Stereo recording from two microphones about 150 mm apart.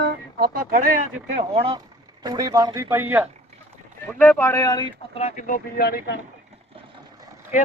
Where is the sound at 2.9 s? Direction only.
15° right (ahead or behind).